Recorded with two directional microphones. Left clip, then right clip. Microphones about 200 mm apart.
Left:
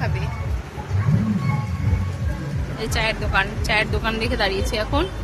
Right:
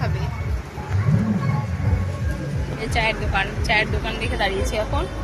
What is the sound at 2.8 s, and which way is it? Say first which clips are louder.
Speech: right 1 dB; 15° left (ahead or behind).